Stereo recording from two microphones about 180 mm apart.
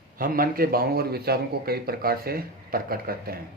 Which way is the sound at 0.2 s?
55° right (ahead or behind).